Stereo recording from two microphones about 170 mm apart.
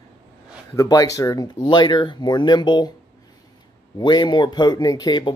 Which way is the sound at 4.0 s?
25° left (ahead or behind).